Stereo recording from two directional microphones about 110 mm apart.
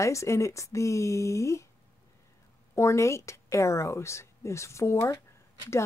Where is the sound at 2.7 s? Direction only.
25° left (ahead or behind).